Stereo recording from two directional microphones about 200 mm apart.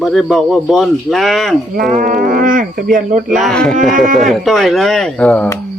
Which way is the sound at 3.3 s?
Centre (ahead or behind).